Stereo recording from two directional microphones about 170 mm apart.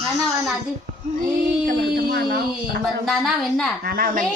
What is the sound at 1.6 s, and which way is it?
Speech, 65° right (ahead or behind).